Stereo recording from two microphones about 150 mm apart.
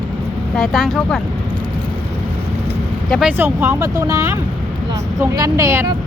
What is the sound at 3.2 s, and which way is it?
Speech, 15° right (ahead or behind).